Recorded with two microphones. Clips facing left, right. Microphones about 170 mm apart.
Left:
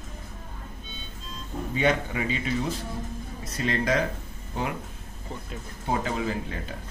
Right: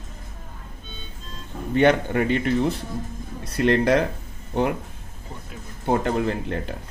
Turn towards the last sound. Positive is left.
turn(degrees=-65)  # may be behind; listen again after turning